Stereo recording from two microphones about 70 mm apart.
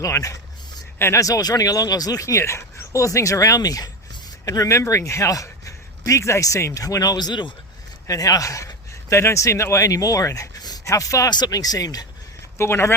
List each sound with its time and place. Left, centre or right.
0.0 s speech: left
6.8 s speech: left
8.0 s speech: left
10.8 s speech: left
11.3 s speech: left
12.5 s speech: left